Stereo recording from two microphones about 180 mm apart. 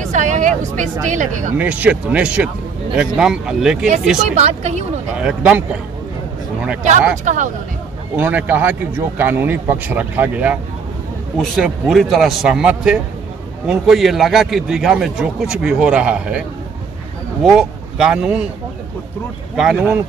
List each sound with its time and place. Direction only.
0.0 s speech: 45° right (ahead or behind)
1.6 s a man's voice: 5° right (ahead or behind)
4.4 s speech: 35° right (ahead or behind)
5.2 s speech: 5° right (ahead or behind)
7.2 s speech: 45° right (ahead or behind)
8.2 s a man's voice: 10° right (ahead or behind)
19.5 s a man's voice: 5° right (ahead or behind)